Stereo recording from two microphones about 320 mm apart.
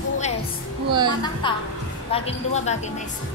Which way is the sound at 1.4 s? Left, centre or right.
Centre.